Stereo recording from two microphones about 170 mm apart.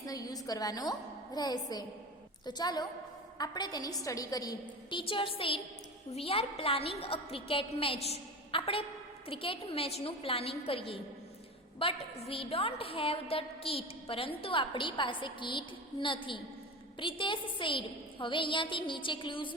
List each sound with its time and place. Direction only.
0.0 s a woman's voice: 20° left (ahead or behind)